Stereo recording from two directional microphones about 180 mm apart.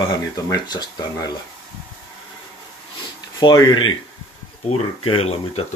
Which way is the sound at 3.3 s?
20° left (ahead or behind).